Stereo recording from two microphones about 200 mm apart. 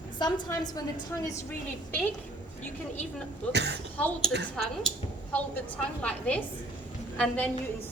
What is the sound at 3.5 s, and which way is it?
Speech, 55° right (ahead or behind).